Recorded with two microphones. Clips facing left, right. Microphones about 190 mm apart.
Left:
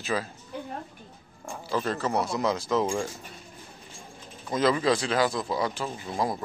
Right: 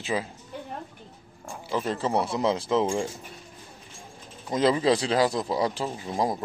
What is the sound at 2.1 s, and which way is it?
A man's voice, 30° right (ahead or behind).